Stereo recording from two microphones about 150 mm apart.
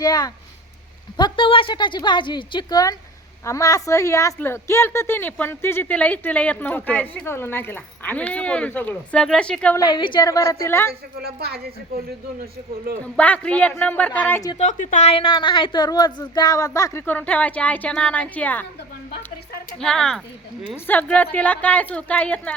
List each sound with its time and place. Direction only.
0.0 s a woman's voice: 25° left (ahead or behind); by 9.7 s 5° left (ahead or behind)
9.7 s a woman's voice: 30° left (ahead or behind)
11.2 s speech: 90° right
13.1 s a woman's voice: 10° left (ahead or behind)
14.6 s a woman's voice: 50° left (ahead or behind); by 17.0 s 25° left (ahead or behind)
17.1 s a woman's voice: 10° left (ahead or behind)
19.8 s a woman's voice: 5° left (ahead or behind)